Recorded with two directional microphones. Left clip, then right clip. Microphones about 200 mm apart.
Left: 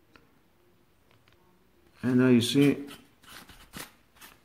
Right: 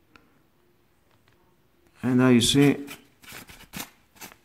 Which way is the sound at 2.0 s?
20° right (ahead or behind).